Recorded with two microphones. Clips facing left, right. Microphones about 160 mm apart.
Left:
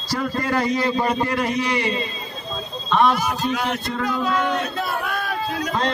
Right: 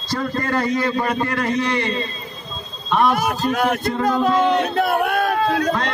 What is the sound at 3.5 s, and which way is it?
Speech, 50° right (ahead or behind).